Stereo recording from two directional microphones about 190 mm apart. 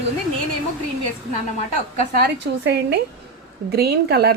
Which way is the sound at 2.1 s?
60° right (ahead or behind).